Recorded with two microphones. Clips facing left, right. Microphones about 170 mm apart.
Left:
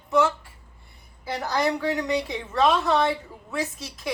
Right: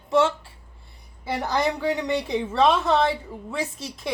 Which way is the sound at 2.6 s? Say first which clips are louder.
Right 1 dB; 25° right (ahead or behind).